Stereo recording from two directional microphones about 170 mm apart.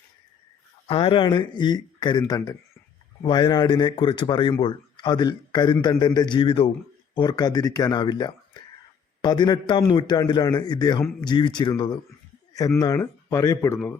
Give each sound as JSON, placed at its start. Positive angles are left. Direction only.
{"t": 0.9, "sound": "a man's voice", "side_deg": 30}